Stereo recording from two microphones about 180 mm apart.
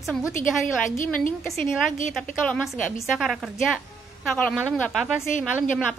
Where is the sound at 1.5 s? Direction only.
Centre (ahead or behind).